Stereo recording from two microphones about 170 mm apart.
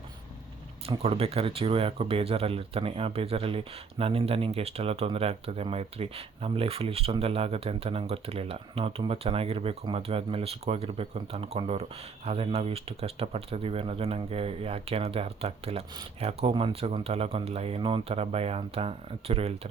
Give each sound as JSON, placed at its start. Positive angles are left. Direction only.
{"t": 0.9, "sound": "speech", "side_deg": -35}